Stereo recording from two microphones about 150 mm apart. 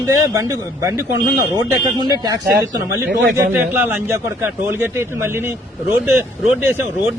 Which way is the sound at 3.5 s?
15° right (ahead or behind).